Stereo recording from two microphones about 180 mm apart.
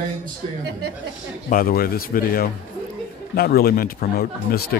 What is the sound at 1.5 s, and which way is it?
A man's voice, 55° left (ahead or behind).